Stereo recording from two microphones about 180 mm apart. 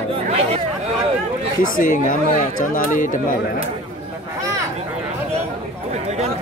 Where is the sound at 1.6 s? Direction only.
50° left (ahead or behind).